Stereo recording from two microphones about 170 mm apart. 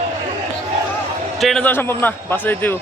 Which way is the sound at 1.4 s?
Centre (ahead or behind).